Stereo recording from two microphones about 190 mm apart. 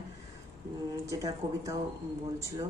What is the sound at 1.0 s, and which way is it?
Speech, 15° right (ahead or behind).